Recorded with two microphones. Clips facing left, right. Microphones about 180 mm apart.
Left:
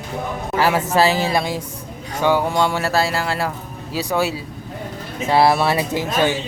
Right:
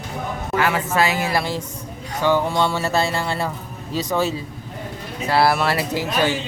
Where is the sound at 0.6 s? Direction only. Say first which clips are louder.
Left 4 dB; 40° left (ahead or behind); by 6.0 s 20° left (ahead or behind).